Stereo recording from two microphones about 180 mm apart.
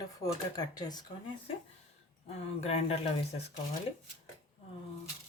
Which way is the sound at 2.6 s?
35° left (ahead or behind).